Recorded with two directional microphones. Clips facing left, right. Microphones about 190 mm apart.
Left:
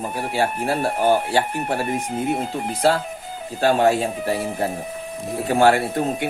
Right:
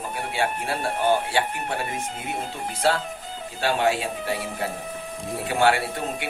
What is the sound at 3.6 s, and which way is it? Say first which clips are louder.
A man's voice: left 6 dB; 40° left (ahead or behind).